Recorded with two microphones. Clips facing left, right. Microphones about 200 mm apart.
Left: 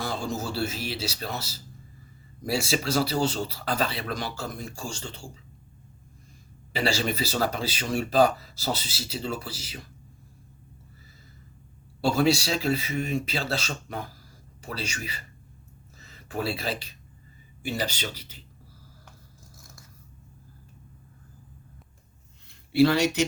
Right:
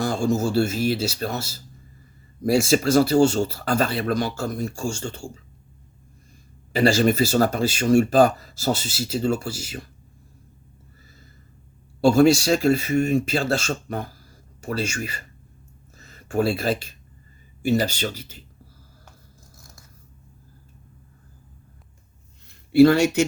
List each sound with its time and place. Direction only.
0.0 s speech: 45° right (ahead or behind)
6.7 s speech: 45° right (ahead or behind)
11.9 s speech: 45° right (ahead or behind)
22.7 s speech: 45° right (ahead or behind)